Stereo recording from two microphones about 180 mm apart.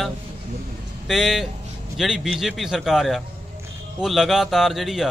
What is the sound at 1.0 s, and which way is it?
Speech, centre (ahead or behind).